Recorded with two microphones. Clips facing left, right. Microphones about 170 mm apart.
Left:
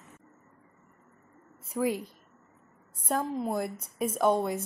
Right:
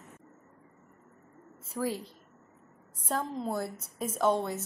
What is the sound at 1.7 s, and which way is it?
A woman's voice, 15° left (ahead or behind).